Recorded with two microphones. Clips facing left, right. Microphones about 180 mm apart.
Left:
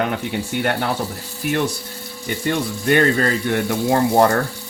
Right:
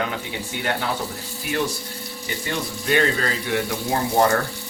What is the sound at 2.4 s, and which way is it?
Speech, 55° left (ahead or behind).